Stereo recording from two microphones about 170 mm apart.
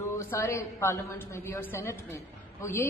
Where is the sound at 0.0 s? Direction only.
15° left (ahead or behind).